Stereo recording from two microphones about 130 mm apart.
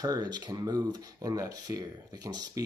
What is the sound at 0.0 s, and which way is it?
Speech, 30° right (ahead or behind).